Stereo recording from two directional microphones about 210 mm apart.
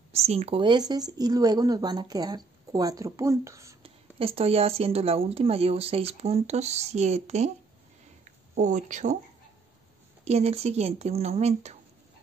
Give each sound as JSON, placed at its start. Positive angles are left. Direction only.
{"t": 0.1, "sound": "speech", "side_deg": -30}
{"t": 3.8, "sound": "speech", "side_deg": -25}
{"t": 8.5, "sound": "speech", "side_deg": -35}
{"t": 10.2, "sound": "speech", "side_deg": -30}